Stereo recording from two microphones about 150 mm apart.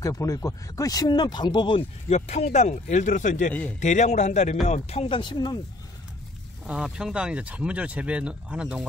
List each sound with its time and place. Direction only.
0.0 s a man's voice: 20° left (ahead or behind)
6.6 s speech: 5° right (ahead or behind)